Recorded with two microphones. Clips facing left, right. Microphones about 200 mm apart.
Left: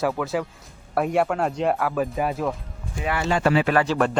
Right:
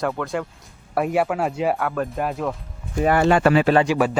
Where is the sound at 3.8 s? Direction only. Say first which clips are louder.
Right 2 dB; 5° right (ahead or behind).